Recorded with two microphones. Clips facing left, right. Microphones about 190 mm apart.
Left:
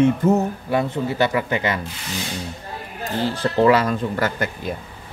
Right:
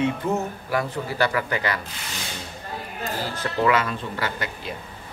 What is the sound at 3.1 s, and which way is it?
Speech, 30° left (ahead or behind).